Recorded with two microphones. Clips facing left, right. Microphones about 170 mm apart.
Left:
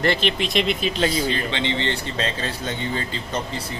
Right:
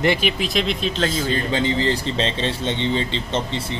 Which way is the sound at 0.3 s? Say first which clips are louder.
Even; centre (ahead or behind).